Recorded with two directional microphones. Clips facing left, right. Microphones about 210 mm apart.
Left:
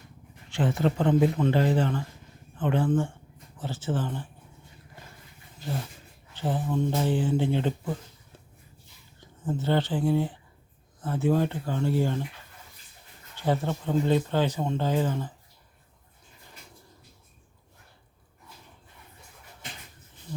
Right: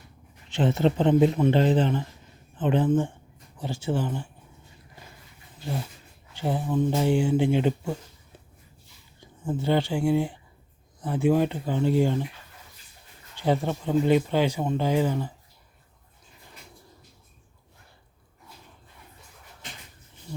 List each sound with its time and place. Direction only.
0.5 s a man's voice: 25° right (ahead or behind)
6.3 s speech: 10° right (ahead or behind)
9.4 s speech: 15° right (ahead or behind)
13.4 s speech: 15° right (ahead or behind)